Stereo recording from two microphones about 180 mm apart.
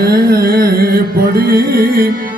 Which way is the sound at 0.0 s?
60° right (ahead or behind).